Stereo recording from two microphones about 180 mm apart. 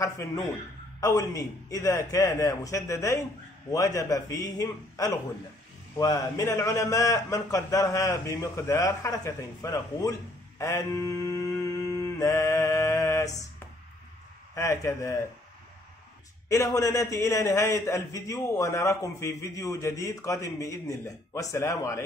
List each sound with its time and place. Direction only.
1.0 s a man's voice: 20° left (ahead or behind)
10.6 s mantra: 15° left (ahead or behind)
14.5 s a man's voice: 15° left (ahead or behind)
16.4 s a man's voice: 15° left (ahead or behind)